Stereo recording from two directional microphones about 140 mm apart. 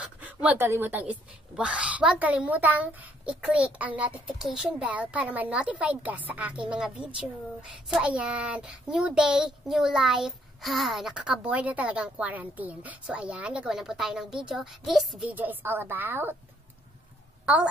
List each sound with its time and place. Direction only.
0.0 s a woman's voice: 10° right (ahead or behind)
15.2 s a woman's voice: 10° right (ahead or behind)